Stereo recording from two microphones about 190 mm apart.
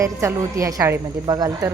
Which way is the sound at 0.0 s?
15° right (ahead or behind).